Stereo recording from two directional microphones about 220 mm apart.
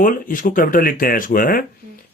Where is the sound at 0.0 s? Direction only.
40° left (ahead or behind).